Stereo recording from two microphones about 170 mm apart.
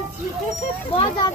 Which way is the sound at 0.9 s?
30° left (ahead or behind).